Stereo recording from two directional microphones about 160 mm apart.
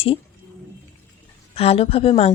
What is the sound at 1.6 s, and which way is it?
Speech, 40° left (ahead or behind).